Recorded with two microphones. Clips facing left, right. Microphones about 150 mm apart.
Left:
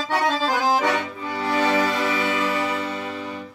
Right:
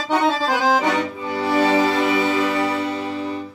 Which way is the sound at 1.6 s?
25° right (ahead or behind).